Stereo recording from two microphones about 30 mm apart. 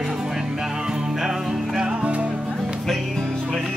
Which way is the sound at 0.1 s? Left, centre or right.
Centre.